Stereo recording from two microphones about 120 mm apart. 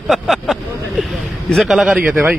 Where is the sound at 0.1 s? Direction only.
Centre (ahead or behind).